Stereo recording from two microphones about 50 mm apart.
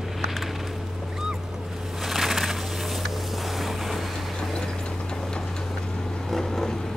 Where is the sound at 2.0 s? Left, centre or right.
Centre.